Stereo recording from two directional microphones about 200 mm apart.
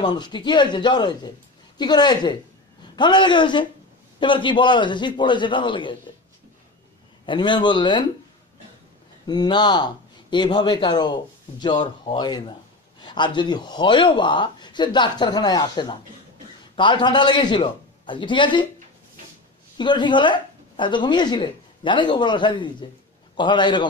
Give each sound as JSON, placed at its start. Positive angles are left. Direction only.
{"t": 0.0, "sound": "a woman's voice", "side_deg": 20}
{"t": 7.2, "sound": "a woman's voice", "side_deg": 25}
{"t": 9.2, "sound": "a woman's voice", "side_deg": 20}
{"t": 19.8, "sound": "a woman's voice", "side_deg": 25}